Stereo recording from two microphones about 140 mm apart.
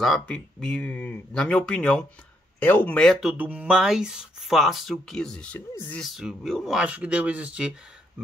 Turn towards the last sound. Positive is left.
turn(degrees=-5)  # may be behind; listen again after turning